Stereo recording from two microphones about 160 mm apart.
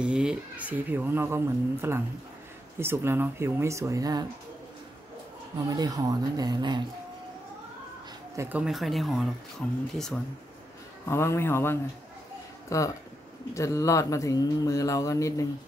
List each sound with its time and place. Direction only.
0.0 s speech: 5° right (ahead or behind); by 4.3 s 25° right (ahead or behind)
5.7 s speech: 25° right (ahead or behind)
8.4 s speech: 10° right (ahead or behind); by 9.8 s 5° left (ahead or behind)
11.1 s speech: 15° left (ahead or behind)
13.6 s mantra: 20° left (ahead or behind)